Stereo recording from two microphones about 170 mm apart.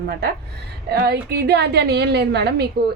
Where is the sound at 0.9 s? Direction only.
70° right (ahead or behind).